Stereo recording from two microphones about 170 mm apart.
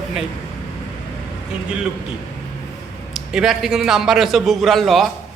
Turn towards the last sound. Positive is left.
turn(degrees=0)  # may be behind; listen again after turning